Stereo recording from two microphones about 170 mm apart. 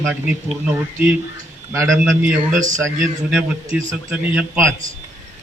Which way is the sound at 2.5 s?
45° right (ahead or behind).